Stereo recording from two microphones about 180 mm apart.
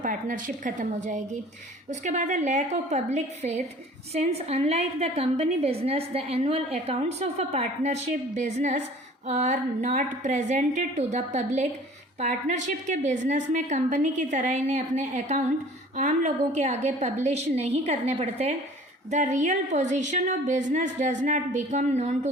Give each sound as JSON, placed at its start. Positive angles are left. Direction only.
{"t": 0.0, "sound": "a woman's voice", "side_deg": -50}